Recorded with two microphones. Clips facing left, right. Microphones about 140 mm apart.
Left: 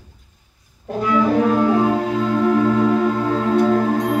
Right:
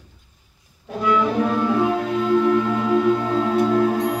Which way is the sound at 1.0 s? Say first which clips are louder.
Left 3 dB; 40° left (ahead or behind).